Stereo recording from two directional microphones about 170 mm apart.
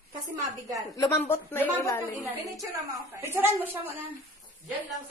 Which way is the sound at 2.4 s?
20° right (ahead or behind).